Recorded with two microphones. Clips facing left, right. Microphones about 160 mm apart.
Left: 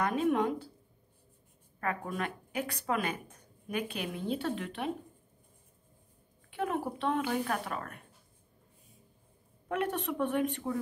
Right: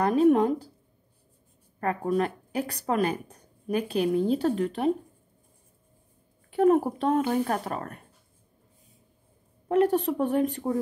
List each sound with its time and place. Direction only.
0.0 s speech: 40° right (ahead or behind)
1.8 s speech: 35° right (ahead or behind)
6.5 s speech: 40° right (ahead or behind)
9.7 s speech: 35° right (ahead or behind)